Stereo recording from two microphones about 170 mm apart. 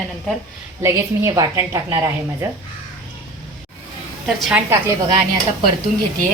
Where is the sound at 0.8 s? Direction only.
15° right (ahead or behind).